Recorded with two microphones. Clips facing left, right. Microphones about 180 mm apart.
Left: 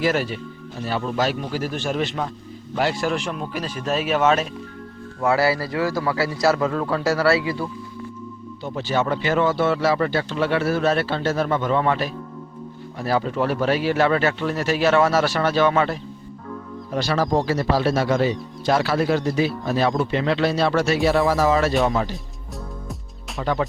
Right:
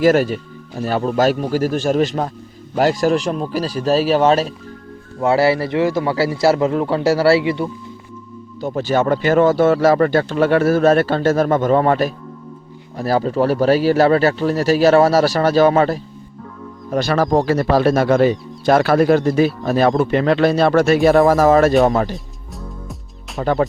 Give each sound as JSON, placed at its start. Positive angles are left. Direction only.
{"t": 0.0, "sound": "a man's voice", "side_deg": -45}
{"t": 8.6, "sound": "speech", "side_deg": -45}
{"t": 16.9, "sound": "speech", "side_deg": -50}
{"t": 23.4, "sound": "speech", "side_deg": -45}